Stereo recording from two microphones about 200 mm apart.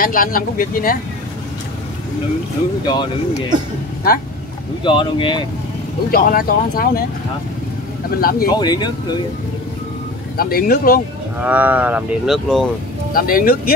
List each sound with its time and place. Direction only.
0.0 s speech: 45° left (ahead or behind)
2.8 s speech: 20° left (ahead or behind)
4.8 s speech: 25° left (ahead or behind)
6.1 s speech: 45° left (ahead or behind)
8.2 s speech: 50° left (ahead or behind)
8.5 s speech: 20° left (ahead or behind)
10.3 s speech: 50° left (ahead or behind)
11.3 s speech: 5° right (ahead or behind)
13.1 s speech: 45° left (ahead or behind)